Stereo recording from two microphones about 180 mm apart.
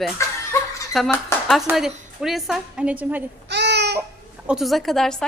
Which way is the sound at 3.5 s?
70° right (ahead or behind).